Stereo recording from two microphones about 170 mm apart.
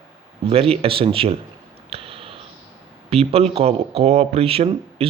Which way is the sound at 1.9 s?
35° right (ahead or behind).